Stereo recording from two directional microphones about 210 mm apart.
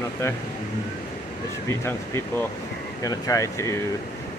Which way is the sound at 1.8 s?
10° left (ahead or behind).